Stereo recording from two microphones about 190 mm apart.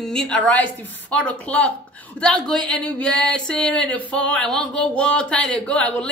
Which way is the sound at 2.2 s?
5° left (ahead or behind).